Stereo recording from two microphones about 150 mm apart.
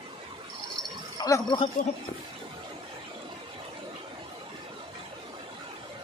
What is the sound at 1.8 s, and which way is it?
Speech, 60° left (ahead or behind).